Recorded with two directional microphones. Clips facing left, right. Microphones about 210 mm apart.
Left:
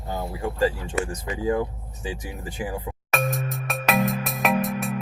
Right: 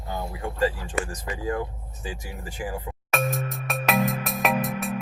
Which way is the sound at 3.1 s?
Centre (ahead or behind).